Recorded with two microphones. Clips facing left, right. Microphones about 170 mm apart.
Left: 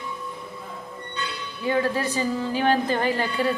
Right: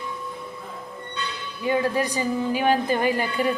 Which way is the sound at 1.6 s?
15° right (ahead or behind).